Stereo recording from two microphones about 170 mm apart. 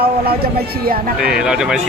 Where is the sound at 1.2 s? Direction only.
5° right (ahead or behind).